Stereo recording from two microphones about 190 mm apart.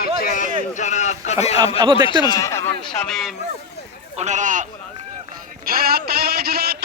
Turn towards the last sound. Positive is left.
turn(degrees=-55)  # may be behind; listen again after turning